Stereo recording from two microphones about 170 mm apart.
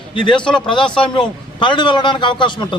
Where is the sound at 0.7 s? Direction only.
30° left (ahead or behind).